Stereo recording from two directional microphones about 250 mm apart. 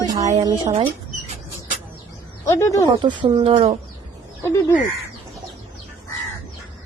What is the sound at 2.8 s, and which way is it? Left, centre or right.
Speech, centre.